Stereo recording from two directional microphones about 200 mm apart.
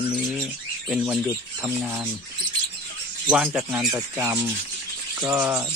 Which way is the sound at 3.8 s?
20° right (ahead or behind).